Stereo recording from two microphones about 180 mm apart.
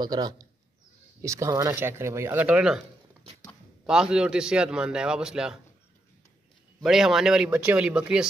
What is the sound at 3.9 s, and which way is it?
Speech, 5° right (ahead or behind).